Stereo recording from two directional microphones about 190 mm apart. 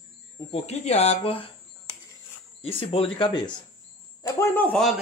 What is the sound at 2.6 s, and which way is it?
Speech, 30° left (ahead or behind).